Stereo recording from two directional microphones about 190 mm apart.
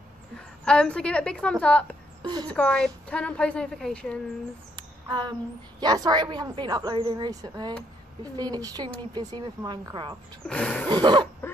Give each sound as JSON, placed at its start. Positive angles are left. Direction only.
{"t": 0.4, "sound": "a woman's voice", "side_deg": 5}
{"t": 2.2, "sound": "a woman's voice", "side_deg": -20}
{"t": 2.5, "sound": "a woman's voice", "side_deg": 5}
{"t": 4.7, "sound": "a sound", "side_deg": -25}
{"t": 5.8, "sound": "speech", "side_deg": -20}
{"t": 10.5, "sound": "a woman's voice", "side_deg": 5}
{"t": 10.9, "sound": "speech", "side_deg": -25}